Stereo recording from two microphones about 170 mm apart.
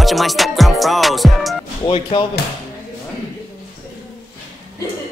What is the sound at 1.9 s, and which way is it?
Speech, 30° left (ahead or behind).